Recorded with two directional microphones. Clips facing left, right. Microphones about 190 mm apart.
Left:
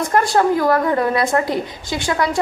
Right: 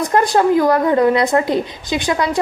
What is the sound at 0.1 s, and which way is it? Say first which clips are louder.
A woman's voice: right 2 dB; 20° right (ahead or behind).